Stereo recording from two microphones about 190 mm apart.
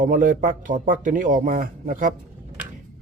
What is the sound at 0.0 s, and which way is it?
Speech, 45° right (ahead or behind).